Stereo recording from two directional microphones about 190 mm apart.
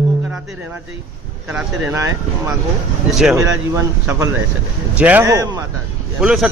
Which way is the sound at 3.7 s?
15° right (ahead or behind).